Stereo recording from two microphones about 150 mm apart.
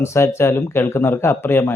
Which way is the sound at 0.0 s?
15° left (ahead or behind).